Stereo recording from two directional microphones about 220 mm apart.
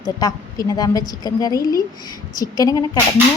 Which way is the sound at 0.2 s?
15° left (ahead or behind).